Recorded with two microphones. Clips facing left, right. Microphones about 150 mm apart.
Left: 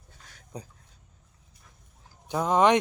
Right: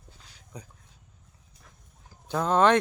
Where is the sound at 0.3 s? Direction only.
35° left (ahead or behind).